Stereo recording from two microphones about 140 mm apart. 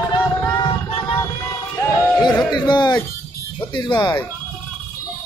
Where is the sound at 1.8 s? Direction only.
20° left (ahead or behind).